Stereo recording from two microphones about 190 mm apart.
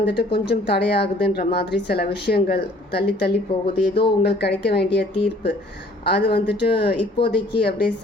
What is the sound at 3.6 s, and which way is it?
Speech, 25° left (ahead or behind).